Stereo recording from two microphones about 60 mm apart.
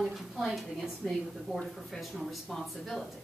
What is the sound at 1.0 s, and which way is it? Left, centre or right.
Speech, centre.